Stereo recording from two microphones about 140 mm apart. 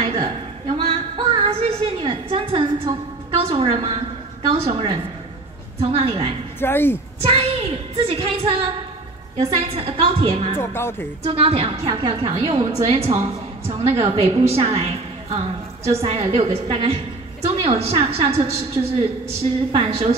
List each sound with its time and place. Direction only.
0.0 s music: 40° right (ahead or behind)
3.3 s a woman's voice: 45° right (ahead or behind)
6.6 s speech: 15° left (ahead or behind)
7.2 s a woman's voice: 45° right (ahead or behind)
10.6 s speech: 15° left (ahead or behind)
11.2 s a woman's voice: 45° right (ahead or behind)